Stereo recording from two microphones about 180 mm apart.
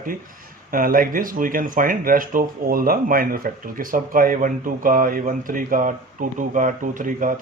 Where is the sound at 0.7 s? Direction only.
50° right (ahead or behind).